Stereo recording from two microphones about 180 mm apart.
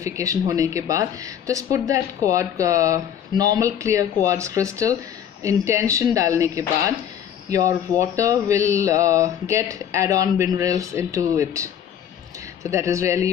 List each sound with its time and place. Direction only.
0.0 s speech: 15° right (ahead or behind)